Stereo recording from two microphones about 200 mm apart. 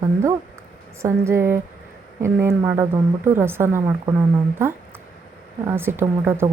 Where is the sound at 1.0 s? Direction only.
15° right (ahead or behind).